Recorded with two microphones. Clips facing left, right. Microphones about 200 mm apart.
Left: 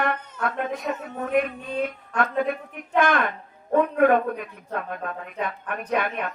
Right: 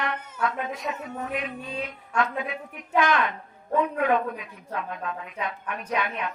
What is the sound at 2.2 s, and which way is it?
A man's voice, 55° left (ahead or behind).